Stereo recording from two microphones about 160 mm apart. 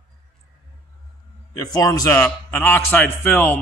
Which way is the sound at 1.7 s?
20° left (ahead or behind).